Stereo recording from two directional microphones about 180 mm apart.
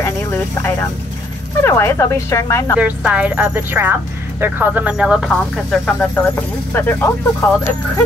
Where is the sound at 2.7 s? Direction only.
5° right (ahead or behind); by 7.1 s 10° left (ahead or behind).